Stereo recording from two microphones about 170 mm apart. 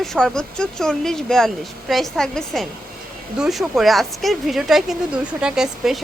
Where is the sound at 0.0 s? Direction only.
Centre (ahead or behind).